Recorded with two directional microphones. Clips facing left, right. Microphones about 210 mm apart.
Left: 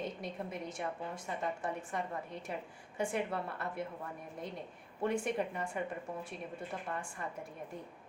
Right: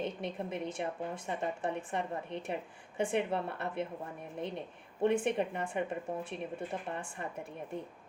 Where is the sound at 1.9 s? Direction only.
25° right (ahead or behind).